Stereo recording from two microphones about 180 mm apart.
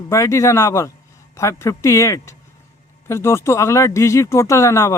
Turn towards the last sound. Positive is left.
turn(degrees=15)  # may be behind; listen again after turning